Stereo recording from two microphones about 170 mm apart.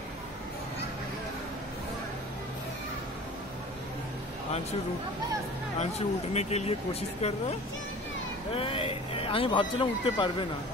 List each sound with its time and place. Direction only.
5.8 s speech: 40° left (ahead or behind)
8.5 s speech: 30° left (ahead or behind)